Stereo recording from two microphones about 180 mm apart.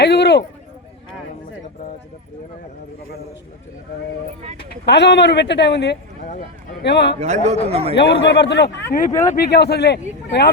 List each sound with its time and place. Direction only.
0.0 s a sound: 65° left (ahead or behind)
4.9 s a man's voice: 70° left (ahead or behind)
7.2 s a man's voice: 40° right (ahead or behind)
7.9 s a man's voice: 75° left (ahead or behind)
9.3 s a man's voice: 60° left (ahead or behind)